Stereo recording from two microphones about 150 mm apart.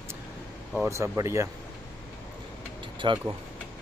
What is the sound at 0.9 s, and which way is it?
Speech, 20° right (ahead or behind).